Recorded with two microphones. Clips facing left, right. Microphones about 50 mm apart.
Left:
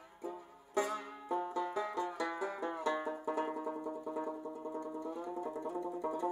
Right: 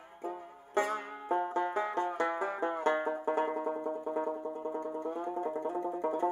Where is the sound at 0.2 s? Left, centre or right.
Right.